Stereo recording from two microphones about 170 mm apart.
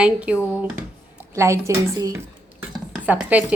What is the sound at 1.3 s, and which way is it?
Speech, 15° right (ahead or behind).